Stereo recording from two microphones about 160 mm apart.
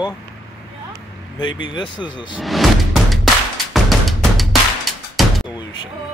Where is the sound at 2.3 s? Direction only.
Centre (ahead or behind).